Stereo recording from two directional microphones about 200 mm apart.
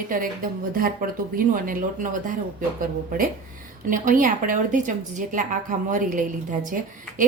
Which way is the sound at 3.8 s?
40° right (ahead or behind).